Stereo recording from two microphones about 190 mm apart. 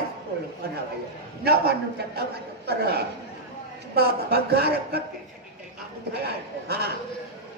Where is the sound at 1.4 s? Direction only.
55° right (ahead or behind).